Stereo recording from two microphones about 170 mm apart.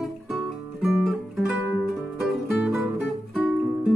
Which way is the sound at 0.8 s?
Centre (ahead or behind).